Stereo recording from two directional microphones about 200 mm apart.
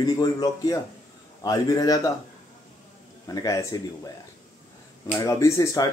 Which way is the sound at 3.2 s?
15° left (ahead or behind).